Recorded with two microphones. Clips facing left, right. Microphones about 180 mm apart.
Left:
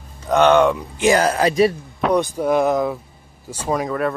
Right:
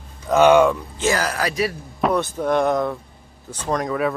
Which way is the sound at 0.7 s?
15° left (ahead or behind).